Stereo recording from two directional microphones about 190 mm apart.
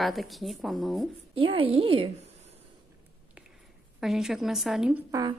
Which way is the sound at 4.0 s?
Centre (ahead or behind).